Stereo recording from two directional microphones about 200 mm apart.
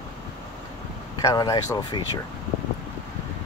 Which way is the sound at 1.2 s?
20° left (ahead or behind).